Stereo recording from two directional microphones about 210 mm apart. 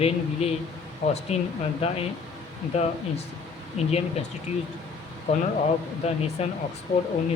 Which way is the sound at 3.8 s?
30° left (ahead or behind).